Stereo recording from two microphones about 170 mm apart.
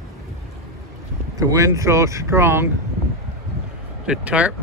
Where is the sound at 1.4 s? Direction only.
20° right (ahead or behind).